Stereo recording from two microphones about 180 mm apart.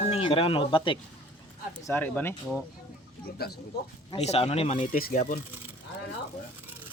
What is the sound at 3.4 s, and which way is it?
Speech, 60° left (ahead or behind).